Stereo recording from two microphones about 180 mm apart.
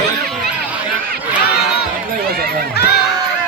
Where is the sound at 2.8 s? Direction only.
65° left (ahead or behind).